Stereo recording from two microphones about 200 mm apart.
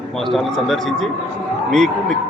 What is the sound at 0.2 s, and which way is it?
Speech, centre (ahead or behind).